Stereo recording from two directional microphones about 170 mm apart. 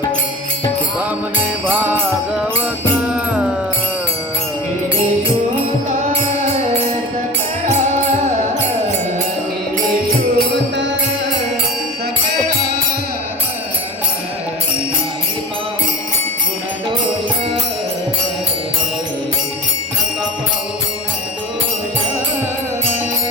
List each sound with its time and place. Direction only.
1.7 s music: 10° right (ahead or behind)
3.1 s music: 5° right (ahead or behind)
10.3 s music: 90° right